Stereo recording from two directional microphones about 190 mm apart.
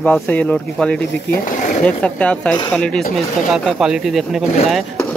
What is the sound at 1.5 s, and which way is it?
Sewing machine, 40° left (ahead or behind).